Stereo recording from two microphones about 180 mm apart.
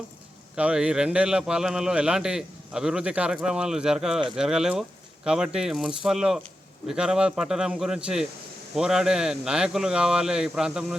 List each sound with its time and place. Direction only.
0.5 s a man's voice: 5° right (ahead or behind)